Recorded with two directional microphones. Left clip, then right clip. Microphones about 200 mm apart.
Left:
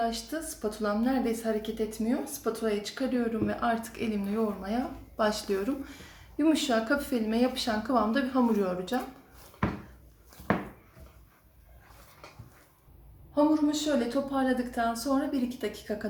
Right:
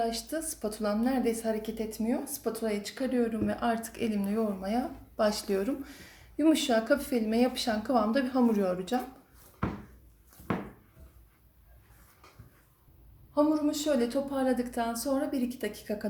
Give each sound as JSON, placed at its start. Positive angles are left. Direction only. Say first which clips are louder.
{"t": 0.0, "sound": "a woman's voice", "louder": "even", "side_deg": -25}
{"t": 13.3, "sound": "a woman's voice", "louder": "left 2 dB", "side_deg": -30}